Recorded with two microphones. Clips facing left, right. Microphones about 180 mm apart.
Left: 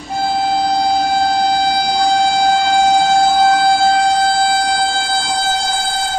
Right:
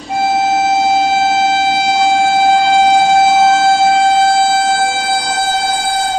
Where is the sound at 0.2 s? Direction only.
20° right (ahead or behind).